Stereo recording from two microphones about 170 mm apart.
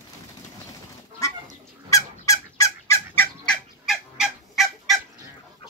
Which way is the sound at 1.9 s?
20° left (ahead or behind).